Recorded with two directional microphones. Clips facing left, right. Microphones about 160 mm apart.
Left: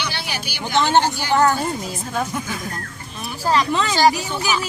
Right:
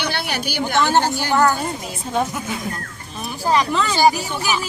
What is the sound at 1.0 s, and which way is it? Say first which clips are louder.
Speech: right 1 dB; 45° right (ahead or behind).